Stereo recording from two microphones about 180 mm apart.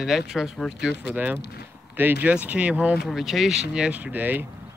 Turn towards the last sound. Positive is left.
turn(degrees=-10)  # may be behind; listen again after turning